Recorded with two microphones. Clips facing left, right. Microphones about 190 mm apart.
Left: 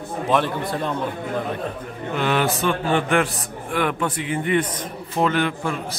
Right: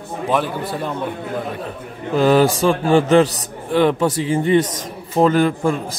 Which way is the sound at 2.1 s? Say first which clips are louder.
Right 8 dB; 35° right (ahead or behind).